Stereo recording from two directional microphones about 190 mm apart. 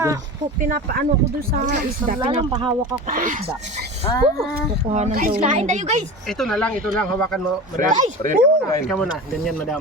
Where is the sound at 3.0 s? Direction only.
45° right (ahead or behind).